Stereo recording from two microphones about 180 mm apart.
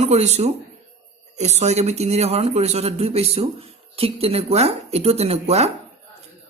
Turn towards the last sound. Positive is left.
turn(degrees=-35)  # may be behind; listen again after turning